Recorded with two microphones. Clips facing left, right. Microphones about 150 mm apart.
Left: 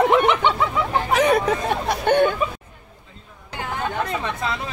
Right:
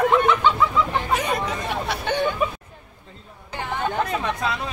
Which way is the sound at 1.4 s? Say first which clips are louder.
Left 5 dB; 50° left (ahead or behind).